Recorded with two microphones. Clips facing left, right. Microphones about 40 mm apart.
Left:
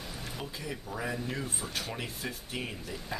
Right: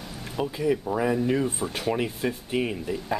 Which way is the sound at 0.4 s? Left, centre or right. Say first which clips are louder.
Right 18 dB; centre.